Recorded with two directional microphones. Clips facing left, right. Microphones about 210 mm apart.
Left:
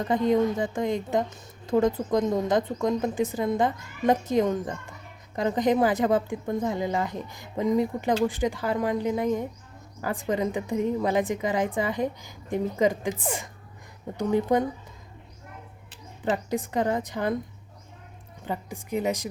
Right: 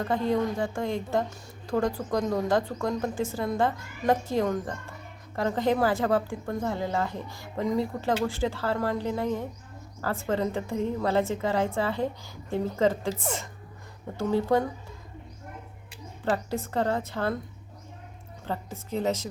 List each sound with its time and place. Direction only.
0.0 s a woman's voice: 20° left (ahead or behind)
16.2 s a woman's voice: 15° left (ahead or behind)
18.4 s a woman's voice: 15° left (ahead or behind)